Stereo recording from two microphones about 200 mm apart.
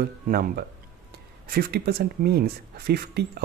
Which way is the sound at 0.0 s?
50° right (ahead or behind).